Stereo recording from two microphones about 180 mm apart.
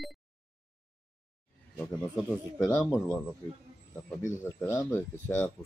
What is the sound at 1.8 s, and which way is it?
Speech, 5° left (ahead or behind).